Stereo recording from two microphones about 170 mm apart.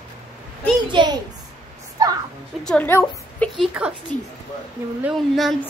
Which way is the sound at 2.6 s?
10° left (ahead or behind).